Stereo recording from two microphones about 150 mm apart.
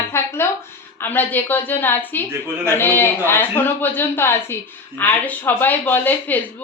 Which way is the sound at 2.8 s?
15° left (ahead or behind).